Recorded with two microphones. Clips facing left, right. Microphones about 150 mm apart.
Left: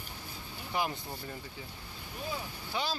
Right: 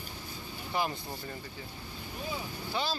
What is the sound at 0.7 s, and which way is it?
Speech, 10° left (ahead or behind).